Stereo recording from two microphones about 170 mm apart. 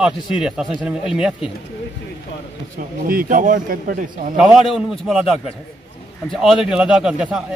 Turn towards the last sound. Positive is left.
turn(degrees=-5)  # may be behind; listen again after turning